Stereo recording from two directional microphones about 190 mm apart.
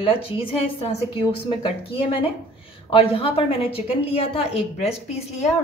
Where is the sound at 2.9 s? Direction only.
30° left (ahead or behind).